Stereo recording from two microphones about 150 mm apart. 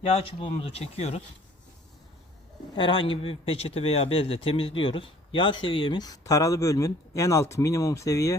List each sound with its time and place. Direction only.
0.0 s speech: 40° left (ahead or behind)
2.7 s speech: 35° left (ahead or behind)